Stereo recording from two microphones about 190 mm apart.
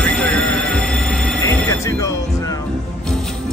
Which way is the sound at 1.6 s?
15° left (ahead or behind).